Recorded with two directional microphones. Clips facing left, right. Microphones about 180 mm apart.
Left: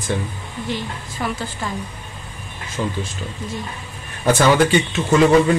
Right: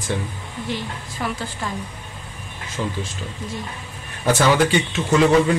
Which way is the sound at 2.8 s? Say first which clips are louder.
Left 2 dB; 55° left (ahead or behind).